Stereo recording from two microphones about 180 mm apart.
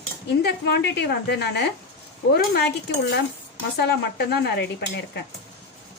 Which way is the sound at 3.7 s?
65° left (ahead or behind).